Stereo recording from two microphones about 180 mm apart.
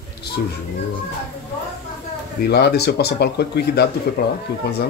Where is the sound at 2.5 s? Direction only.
65° left (ahead or behind).